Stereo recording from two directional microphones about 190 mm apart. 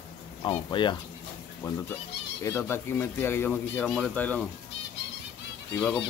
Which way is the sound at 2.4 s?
10° left (ahead or behind).